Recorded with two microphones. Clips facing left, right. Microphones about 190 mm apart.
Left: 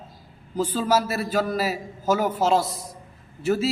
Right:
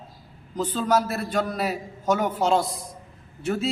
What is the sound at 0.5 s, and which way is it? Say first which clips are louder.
A man's voice: left 1 dB; 5° left (ahead or behind).